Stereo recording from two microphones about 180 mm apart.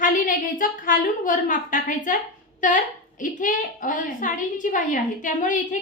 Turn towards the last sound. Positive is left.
turn(degrees=45)  # may be behind; listen again after turning